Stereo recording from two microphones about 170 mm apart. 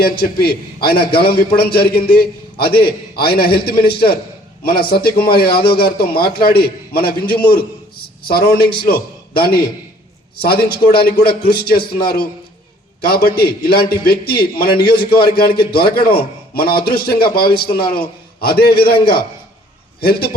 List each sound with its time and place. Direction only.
0.0 s a man's voice: 65° left (ahead or behind)
20.1 s a man's voice: 65° left (ahead or behind)